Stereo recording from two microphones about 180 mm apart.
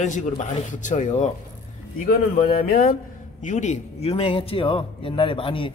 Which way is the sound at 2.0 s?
50° left (ahead or behind).